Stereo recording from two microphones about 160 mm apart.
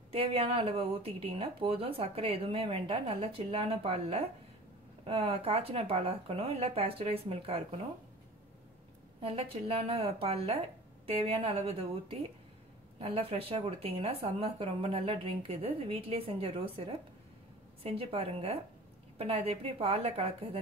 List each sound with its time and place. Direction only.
0.1 s speech: 35° right (ahead or behind)
9.2 s speech: 35° right (ahead or behind)